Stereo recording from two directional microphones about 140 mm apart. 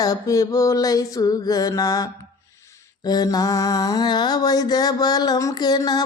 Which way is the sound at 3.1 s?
25° left (ahead or behind).